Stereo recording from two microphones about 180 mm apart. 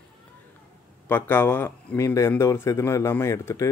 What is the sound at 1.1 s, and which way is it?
Speech, 10° left (ahead or behind).